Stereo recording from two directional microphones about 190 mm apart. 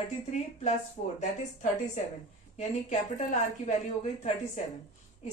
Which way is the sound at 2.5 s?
40° left (ahead or behind).